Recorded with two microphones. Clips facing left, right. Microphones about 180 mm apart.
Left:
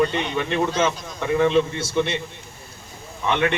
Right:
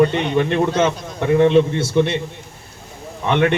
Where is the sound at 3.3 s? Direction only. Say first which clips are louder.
Right 5 dB; 50° right (ahead or behind).